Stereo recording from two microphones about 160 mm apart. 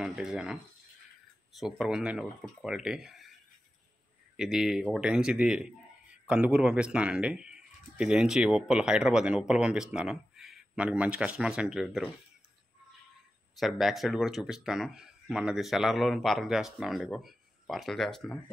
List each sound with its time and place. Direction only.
0.0 s speech: centre (ahead or behind)
1.6 s speech: centre (ahead or behind)
4.4 s speech: centre (ahead or behind)
13.6 s speech: centre (ahead or behind)